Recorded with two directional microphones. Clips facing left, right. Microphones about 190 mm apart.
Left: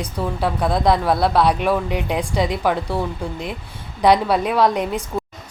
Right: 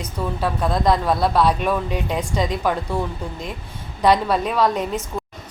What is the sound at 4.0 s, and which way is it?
A woman's voice, 10° left (ahead or behind).